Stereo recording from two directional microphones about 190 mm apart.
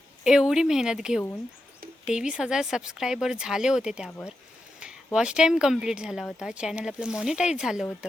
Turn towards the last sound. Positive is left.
turn(degrees=-5)  # may be behind; listen again after turning